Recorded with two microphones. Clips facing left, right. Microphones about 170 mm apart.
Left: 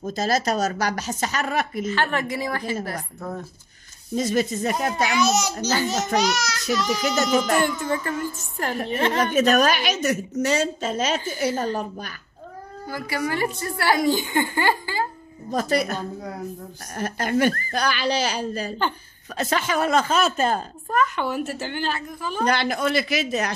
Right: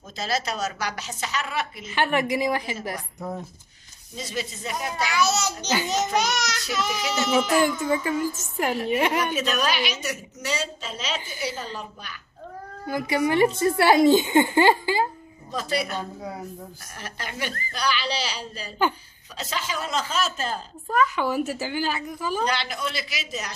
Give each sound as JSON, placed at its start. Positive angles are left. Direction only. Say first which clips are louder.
{"t": 0.0, "sound": "a woman's voice", "louder": "left 6 dB", "side_deg": 45}
{"t": 1.9, "sound": "speech", "louder": "right 1 dB", "side_deg": -15}
{"t": 4.1, "sound": "a woman's voice", "louder": "left 10 dB", "side_deg": 50}
{"t": 5.1, "sound": "a child's voice", "louder": "right 1 dB", "side_deg": 15}
{"t": 6.2, "sound": "a child's voice", "louder": "left 3 dB", "side_deg": 0}
{"t": 9.2, "sound": "a woman's voice", "louder": "left 7 dB", "side_deg": 50}
{"t": 12.8, "sound": "speech", "louder": "right 4 dB", "side_deg": -20}
{"t": 15.5, "sound": "a woman's voice", "louder": "left 5 dB", "side_deg": 45}
{"t": 20.9, "sound": "a child's voice", "louder": "even", "side_deg": -5}
{"t": 22.4, "sound": "speech", "louder": "left 9 dB", "side_deg": 50}